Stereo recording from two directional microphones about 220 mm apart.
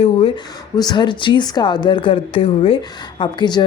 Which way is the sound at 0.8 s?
20° left (ahead or behind).